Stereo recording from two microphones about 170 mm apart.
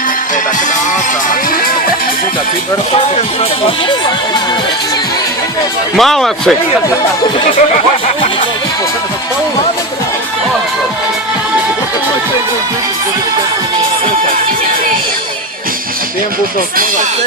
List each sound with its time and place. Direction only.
3.6 s speech: 25° left (ahead or behind)
6.0 s speech: centre (ahead or behind)
7.3 s speech: 35° left (ahead or behind)